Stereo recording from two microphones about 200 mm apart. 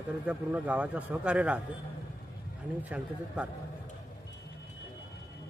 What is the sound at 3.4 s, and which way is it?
Speech, 5° right (ahead or behind).